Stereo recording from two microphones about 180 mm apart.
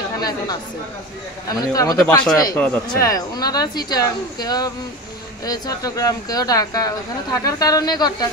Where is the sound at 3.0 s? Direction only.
20° left (ahead or behind).